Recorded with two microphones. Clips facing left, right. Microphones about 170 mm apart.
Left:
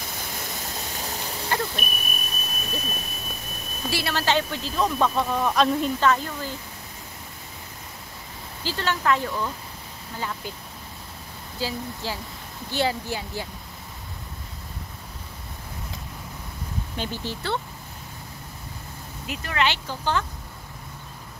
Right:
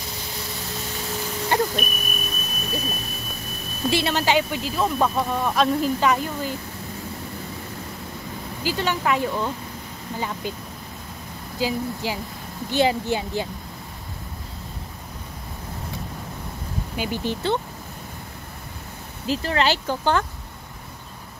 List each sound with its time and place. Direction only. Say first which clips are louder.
1.5 s a sound: right 5 dB; 25° right (ahead or behind)
1.9 s smoke detector: right 4 dB; 40° right (ahead or behind)
3.9 s speech: right 3 dB; 20° right (ahead or behind); by 5.9 s centre (ahead or behind)
5.9 s speech: right 1 dB; 15° right (ahead or behind)
8.6 s speech: right 1 dB; 15° right (ahead or behind)
11.6 s speech: right 5 dB; 15° right (ahead or behind)
16.9 s speech: right 6 dB; 10° right (ahead or behind)
19.2 s speech: right 4 dB; 30° right (ahead or behind)
19.9 s speech: right 5 dB; 55° right (ahead or behind)